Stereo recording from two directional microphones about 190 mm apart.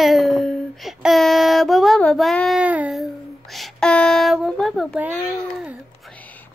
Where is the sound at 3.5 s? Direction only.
Centre (ahead or behind).